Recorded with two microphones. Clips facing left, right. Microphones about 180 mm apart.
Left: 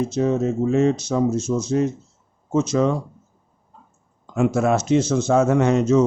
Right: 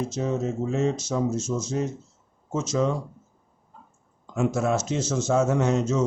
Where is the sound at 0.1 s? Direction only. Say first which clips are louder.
Left 6 dB; 65° left (ahead or behind).